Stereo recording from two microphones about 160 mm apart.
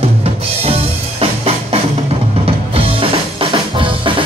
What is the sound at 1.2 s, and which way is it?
Music, 40° right (ahead or behind).